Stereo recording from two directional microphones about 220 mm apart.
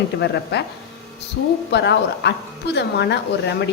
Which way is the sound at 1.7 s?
50° left (ahead or behind).